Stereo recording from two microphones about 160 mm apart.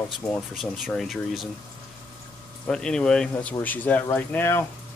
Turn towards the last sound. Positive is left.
turn(degrees=15)  # may be behind; listen again after turning